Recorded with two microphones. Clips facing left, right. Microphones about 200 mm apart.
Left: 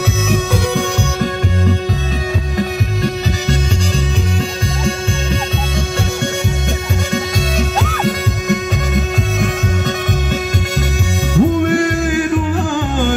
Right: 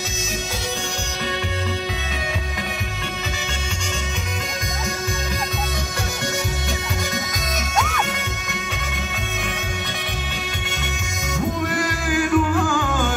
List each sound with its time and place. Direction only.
0.3 s music: 60° left (ahead or behind)
7.8 s music: 35° left (ahead or behind)
11.3 s music: 25° left (ahead or behind)